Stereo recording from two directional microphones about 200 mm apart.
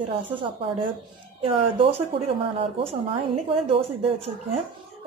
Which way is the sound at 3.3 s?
30° right (ahead or behind).